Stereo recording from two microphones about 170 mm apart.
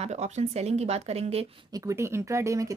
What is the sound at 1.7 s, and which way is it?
Speech, 20° right (ahead or behind).